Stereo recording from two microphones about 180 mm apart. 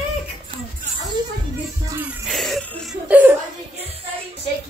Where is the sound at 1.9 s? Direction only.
10° right (ahead or behind).